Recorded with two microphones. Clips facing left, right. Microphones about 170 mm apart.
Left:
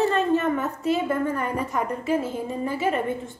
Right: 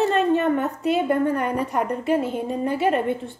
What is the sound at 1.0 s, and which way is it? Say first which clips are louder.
A woman's voice: right 4 dB; 65° right (ahead or behind).